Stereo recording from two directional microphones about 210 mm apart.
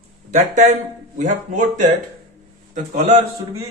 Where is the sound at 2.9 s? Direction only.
35° right (ahead or behind).